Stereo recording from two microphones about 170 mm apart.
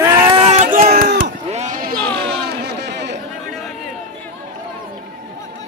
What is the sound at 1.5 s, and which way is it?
Sheep, 40° right (ahead or behind).